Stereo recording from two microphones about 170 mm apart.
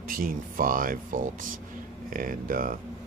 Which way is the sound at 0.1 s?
55° right (ahead or behind).